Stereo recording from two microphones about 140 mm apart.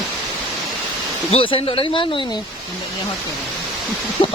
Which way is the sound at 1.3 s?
40° left (ahead or behind).